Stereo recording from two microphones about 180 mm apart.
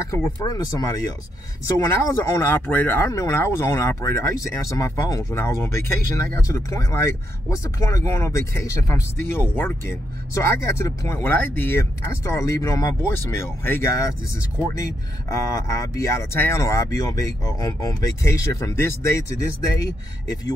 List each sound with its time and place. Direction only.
0.1 s speech: 20° left (ahead or behind)
15.2 s speech: 15° left (ahead or behind)